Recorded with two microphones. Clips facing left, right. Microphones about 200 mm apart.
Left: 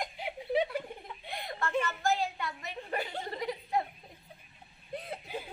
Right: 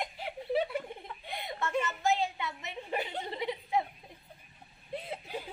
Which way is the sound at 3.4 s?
5° right (ahead or behind).